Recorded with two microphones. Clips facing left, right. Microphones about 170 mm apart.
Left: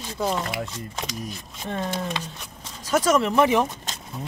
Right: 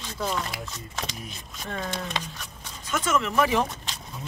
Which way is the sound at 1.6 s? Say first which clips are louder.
Left 4 dB; 20° left (ahead or behind).